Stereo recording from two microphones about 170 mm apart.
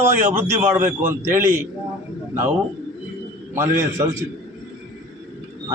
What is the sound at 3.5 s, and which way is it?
Speech, 15° right (ahead or behind).